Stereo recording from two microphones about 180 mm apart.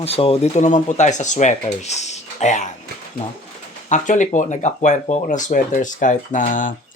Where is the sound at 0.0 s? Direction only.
35° left (ahead or behind).